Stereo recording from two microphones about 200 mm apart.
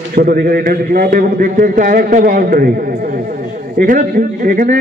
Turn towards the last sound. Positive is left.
turn(degrees=-45)  # may be behind; listen again after turning